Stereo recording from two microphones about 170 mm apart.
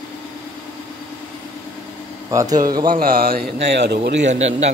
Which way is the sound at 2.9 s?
60° right (ahead or behind).